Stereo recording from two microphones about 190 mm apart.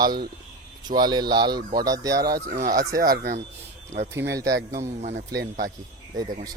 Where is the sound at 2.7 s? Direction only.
50° right (ahead or behind).